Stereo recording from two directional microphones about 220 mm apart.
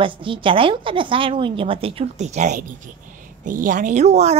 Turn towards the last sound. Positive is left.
turn(degrees=-30)  # may be behind; listen again after turning